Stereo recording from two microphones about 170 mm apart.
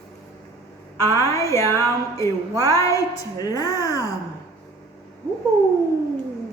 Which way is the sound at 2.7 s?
20° left (ahead or behind).